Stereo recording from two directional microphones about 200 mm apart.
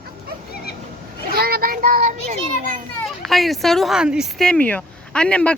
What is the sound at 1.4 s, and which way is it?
Children playing, 50° right (ahead or behind).